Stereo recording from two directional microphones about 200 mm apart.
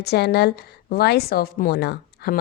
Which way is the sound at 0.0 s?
55° left (ahead or behind).